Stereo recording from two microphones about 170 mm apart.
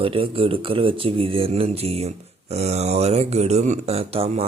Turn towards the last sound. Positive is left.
turn(degrees=-35)  # may be behind; listen again after turning